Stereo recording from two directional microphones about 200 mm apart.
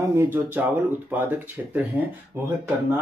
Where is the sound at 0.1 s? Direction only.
10° right (ahead or behind).